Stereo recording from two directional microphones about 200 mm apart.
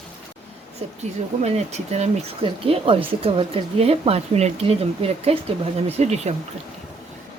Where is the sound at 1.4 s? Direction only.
35° right (ahead or behind).